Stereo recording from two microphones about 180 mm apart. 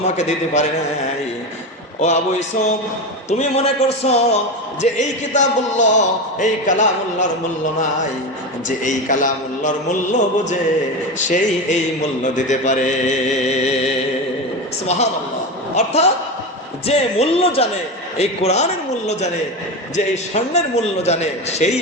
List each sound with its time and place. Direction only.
0.0 s a man's voice: 40° left (ahead or behind)
2.0 s a man's voice: 40° left (ahead or behind)
3.2 s a man's voice: 35° left (ahead or behind)
8.8 s a man's voice: 45° left (ahead or behind)
12.2 s a man's voice: 40° left (ahead or behind)